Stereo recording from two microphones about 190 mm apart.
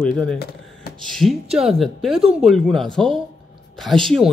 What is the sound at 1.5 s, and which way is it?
Speech, centre (ahead or behind).